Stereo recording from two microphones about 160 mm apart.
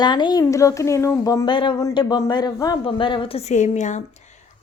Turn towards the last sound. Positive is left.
turn(degrees=50)  # may be behind; listen again after turning